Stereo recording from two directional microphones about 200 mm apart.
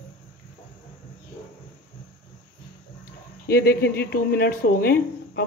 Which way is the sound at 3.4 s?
50° left (ahead or behind).